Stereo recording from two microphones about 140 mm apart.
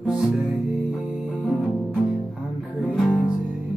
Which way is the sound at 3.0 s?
5° right (ahead or behind).